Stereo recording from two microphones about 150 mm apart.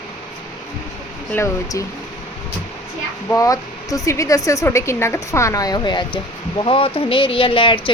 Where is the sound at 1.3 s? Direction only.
15° left (ahead or behind).